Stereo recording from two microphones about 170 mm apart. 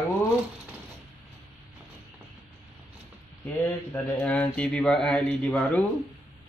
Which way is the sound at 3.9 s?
10° left (ahead or behind).